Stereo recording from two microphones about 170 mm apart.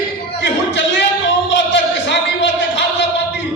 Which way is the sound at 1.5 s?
90° left.